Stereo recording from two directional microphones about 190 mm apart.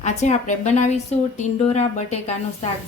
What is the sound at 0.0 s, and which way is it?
A woman's voice, 35° left (ahead or behind).